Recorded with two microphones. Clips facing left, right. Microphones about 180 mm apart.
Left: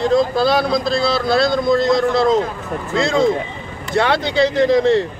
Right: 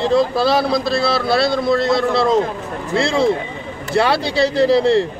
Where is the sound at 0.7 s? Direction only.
5° right (ahead or behind).